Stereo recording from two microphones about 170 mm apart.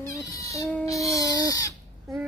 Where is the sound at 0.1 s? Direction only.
20° left (ahead or behind).